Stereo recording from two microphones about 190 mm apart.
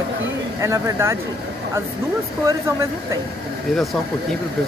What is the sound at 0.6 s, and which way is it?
Speech, 15° right (ahead or behind).